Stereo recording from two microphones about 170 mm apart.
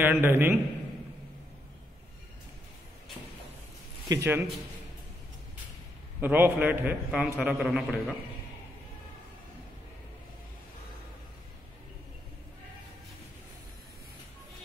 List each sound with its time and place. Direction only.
0.0 s a man's voice: 10° right (ahead or behind)
4.1 s a man's voice: 15° right (ahead or behind)
6.2 s a man's voice: 10° right (ahead or behind)